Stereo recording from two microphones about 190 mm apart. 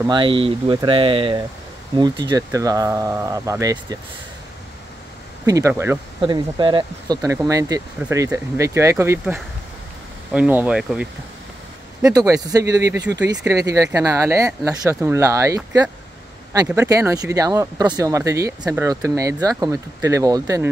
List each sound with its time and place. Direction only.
0.0 s speech: 25° right (ahead or behind)
5.4 s speech: 15° right (ahead or behind)
6.2 s speech: 25° right (ahead or behind)
10.3 s speech: 5° right (ahead or behind)
12.0 s speech: 15° right (ahead or behind)